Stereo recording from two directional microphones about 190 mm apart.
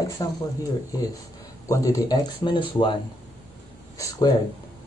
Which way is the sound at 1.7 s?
20° left (ahead or behind).